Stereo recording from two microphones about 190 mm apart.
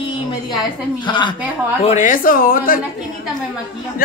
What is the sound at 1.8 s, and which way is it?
A woman's voice, 40° left (ahead or behind).